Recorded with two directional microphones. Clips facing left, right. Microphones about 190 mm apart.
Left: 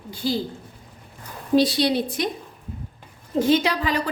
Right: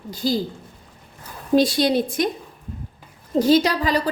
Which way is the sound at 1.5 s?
45° right (ahead or behind).